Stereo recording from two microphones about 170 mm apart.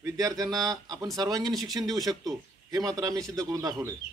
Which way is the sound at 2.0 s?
20° right (ahead or behind).